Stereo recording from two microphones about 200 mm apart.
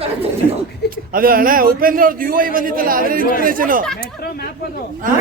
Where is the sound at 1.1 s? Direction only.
45° right (ahead or behind).